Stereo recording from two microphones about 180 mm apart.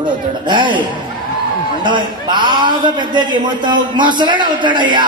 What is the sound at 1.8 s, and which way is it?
A man's voice, 25° right (ahead or behind).